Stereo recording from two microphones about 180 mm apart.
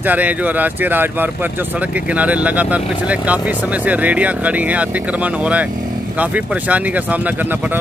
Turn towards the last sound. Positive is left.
turn(degrees=-10)  # may be behind; listen again after turning